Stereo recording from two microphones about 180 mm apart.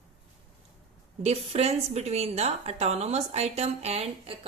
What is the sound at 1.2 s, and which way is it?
A woman's voice, 35° right (ahead or behind).